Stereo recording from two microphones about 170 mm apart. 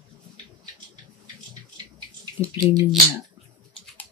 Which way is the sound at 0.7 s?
25° right (ahead or behind).